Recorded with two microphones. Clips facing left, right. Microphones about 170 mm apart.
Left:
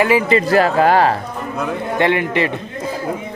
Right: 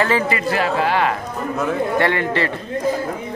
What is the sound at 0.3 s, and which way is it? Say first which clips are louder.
Speech: left 6 dB; 40° left (ahead or behind).